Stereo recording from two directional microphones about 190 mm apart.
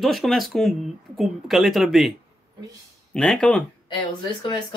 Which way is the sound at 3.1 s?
5° left (ahead or behind).